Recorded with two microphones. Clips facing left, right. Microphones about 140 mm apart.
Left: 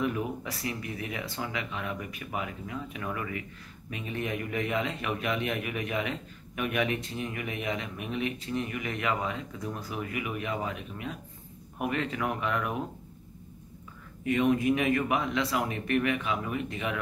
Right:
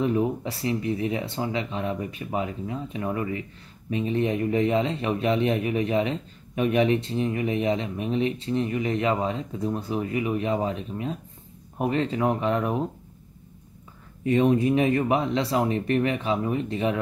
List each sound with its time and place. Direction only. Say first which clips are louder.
0.0 s speech: right 7 dB; 30° right (ahead or behind)
14.2 s speech: right 5 dB; 30° right (ahead or behind)